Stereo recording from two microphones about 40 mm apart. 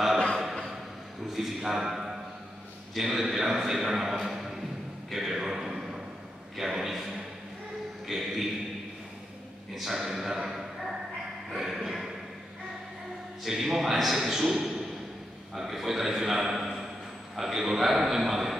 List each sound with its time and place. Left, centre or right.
1.3 s a man's voice: centre
5.1 s a sound: centre
8.1 s music: centre
9.8 s dog: centre
11.5 s a sound: centre
13.4 s a man's voice: centre